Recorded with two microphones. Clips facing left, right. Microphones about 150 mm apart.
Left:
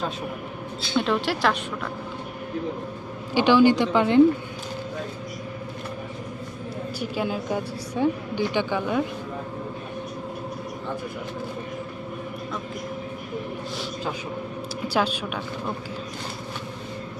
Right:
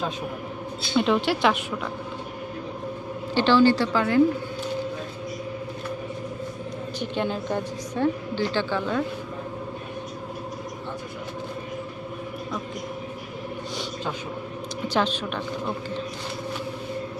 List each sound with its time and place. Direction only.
0.9 s a woman's voice: centre (ahead or behind)
3.3 s a woman's voice: 15° left (ahead or behind)
7.0 s a woman's voice: 5° left (ahead or behind)
14.9 s a woman's voice: 10° left (ahead or behind)